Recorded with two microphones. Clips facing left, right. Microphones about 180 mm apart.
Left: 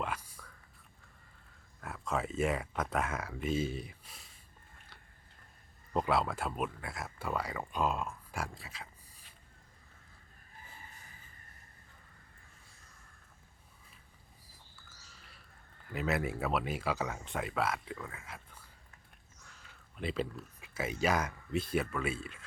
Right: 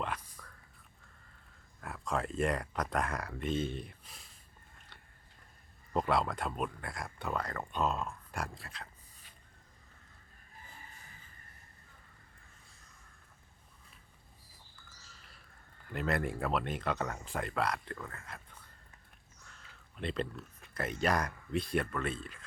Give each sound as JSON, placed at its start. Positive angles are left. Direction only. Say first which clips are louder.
{"t": 0.0, "sound": "whispering", "louder": "even", "side_deg": 5}
{"t": 1.8, "sound": "speech", "louder": "even", "side_deg": 0}
{"t": 5.9, "sound": "speech", "louder": "even", "side_deg": 0}
{"t": 14.8, "sound": "a sound", "louder": "even", "side_deg": 0}
{"t": 15.9, "sound": "speech", "louder": "even", "side_deg": 5}